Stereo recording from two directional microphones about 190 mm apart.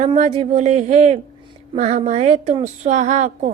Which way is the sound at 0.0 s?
35° right (ahead or behind).